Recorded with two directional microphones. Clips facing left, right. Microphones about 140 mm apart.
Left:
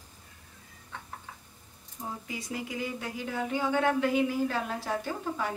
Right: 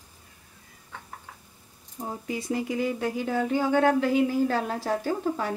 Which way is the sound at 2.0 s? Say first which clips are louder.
Right 4 dB; 45° right (ahead or behind).